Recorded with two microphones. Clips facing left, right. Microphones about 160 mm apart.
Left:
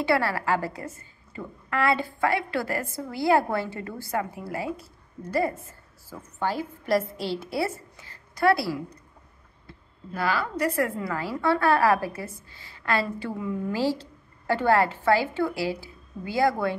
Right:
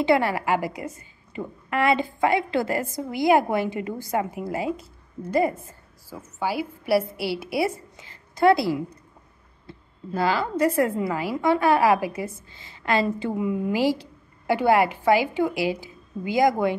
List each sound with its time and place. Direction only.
0.0 s a woman's voice: 20° right (ahead or behind)